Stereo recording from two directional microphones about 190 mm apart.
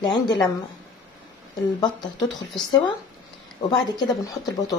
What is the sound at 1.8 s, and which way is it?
Speech, 20° left (ahead or behind).